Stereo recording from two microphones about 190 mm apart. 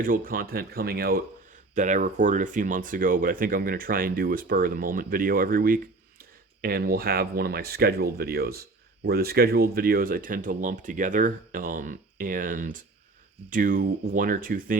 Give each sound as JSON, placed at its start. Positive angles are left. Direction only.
{"t": 0.0, "sound": "speech", "side_deg": -50}
{"t": 1.7, "sound": "speech", "side_deg": -40}